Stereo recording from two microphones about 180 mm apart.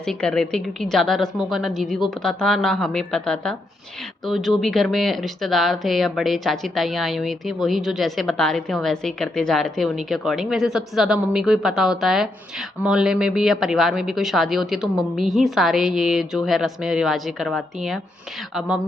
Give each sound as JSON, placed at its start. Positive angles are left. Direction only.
{"t": 0.0, "sound": "speech", "side_deg": 5}